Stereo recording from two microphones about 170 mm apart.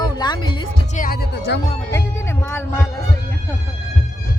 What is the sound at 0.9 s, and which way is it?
Music, 60° left (ahead or behind).